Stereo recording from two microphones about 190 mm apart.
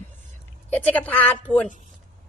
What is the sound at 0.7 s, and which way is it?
A woman's voice, 10° left (ahead or behind).